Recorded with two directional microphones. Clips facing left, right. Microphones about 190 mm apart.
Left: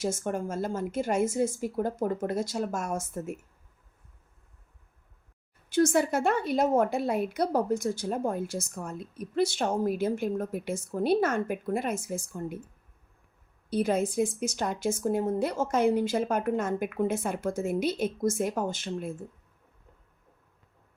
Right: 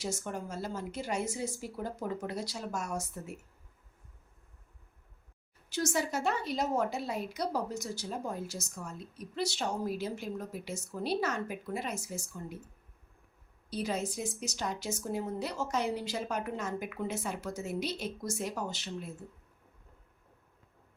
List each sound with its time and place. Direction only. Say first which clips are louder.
0.0 s a woman's voice: left 7 dB; 50° left (ahead or behind)
5.6 s a woman's voice: left 9 dB; 55° left (ahead or behind)
13.7 s a woman's voice: left 8 dB; 55° left (ahead or behind)